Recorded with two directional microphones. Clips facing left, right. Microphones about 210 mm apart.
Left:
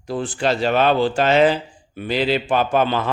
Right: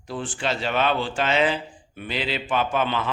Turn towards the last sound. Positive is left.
turn(degrees=40)  # may be behind; listen again after turning